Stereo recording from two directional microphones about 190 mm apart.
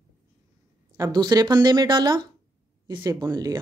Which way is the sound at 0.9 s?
20° right (ahead or behind).